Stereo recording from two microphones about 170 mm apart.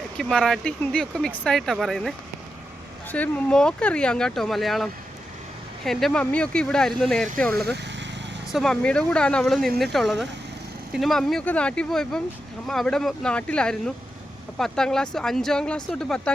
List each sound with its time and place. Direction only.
0.2 s speech: 5° left (ahead or behind)
7.6 s speech: 75° right (ahead or behind)
8.5 s speech: 5° left (ahead or behind)